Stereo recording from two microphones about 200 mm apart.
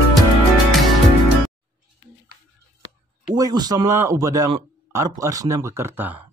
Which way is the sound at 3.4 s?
20° right (ahead or behind).